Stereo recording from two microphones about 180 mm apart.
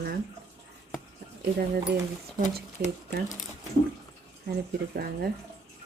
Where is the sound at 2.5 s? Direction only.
65° right (ahead or behind).